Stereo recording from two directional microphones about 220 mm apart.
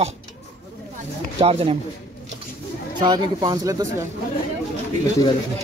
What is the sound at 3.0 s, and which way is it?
Speech, 20° right (ahead or behind).